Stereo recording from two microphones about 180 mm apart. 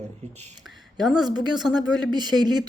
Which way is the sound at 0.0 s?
40° right (ahead or behind).